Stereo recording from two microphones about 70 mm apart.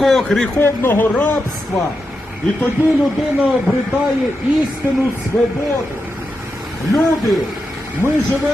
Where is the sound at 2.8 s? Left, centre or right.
Right.